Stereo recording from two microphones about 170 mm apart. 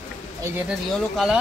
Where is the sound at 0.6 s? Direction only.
Centre (ahead or behind).